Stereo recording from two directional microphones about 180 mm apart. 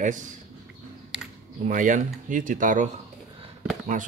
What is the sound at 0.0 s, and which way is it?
Speech, 45° right (ahead or behind).